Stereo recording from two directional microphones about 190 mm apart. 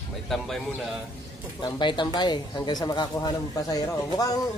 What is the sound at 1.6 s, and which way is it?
Speech, 25° left (ahead or behind).